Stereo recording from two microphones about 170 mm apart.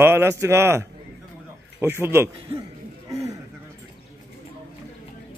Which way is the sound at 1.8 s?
15° right (ahead or behind).